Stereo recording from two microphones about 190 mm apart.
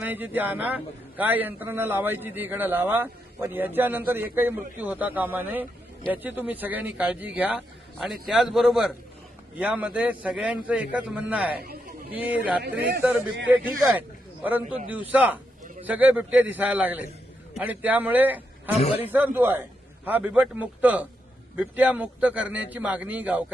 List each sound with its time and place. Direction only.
0.0 s a man's voice: 10° right (ahead or behind)
14.8 s a man's voice: 10° right (ahead or behind)
18.8 s a man's voice: 30° left (ahead or behind)
19.1 s a man's voice: 10° right (ahead or behind)